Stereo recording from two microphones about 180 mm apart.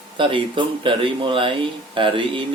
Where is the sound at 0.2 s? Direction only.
30° right (ahead or behind).